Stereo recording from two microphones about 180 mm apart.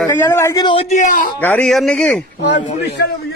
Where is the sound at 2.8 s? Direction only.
65° left (ahead or behind).